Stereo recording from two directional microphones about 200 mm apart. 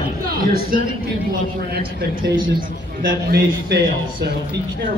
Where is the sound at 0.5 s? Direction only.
45° right (ahead or behind).